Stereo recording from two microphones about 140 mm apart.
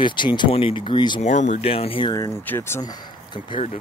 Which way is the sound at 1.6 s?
45° left (ahead or behind).